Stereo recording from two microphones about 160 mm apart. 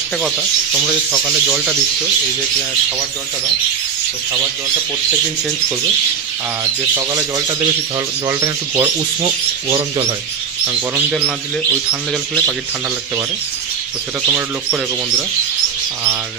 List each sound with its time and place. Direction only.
0.2 s speech: 5° right (ahead or behind)
7.0 s speech: 25° right (ahead or behind)
11.0 s speech: 10° right (ahead or behind)
11.9 s speech: 5° left (ahead or behind)
14.2 s speech: 10° right (ahead or behind)